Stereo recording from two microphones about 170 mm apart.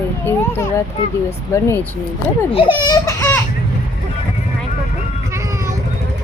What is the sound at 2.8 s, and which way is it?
Speech, 20° left (ahead or behind).